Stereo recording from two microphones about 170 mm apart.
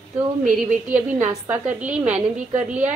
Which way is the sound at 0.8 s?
10° right (ahead or behind).